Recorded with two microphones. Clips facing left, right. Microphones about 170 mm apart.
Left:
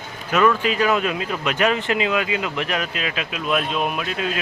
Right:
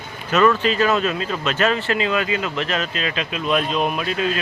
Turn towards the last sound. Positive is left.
turn(degrees=0)  # may be behind; listen again after turning